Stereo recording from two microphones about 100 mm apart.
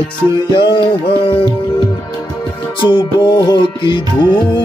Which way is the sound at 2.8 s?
45° left (ahead or behind).